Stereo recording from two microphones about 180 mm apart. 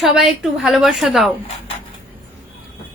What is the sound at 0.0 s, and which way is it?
A woman's voice, centre (ahead or behind).